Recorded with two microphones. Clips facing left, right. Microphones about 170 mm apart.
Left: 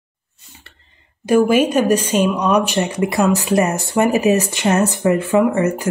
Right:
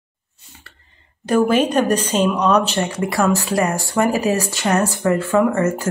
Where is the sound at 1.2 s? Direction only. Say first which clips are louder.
Left 2 dB; 10° left (ahead or behind).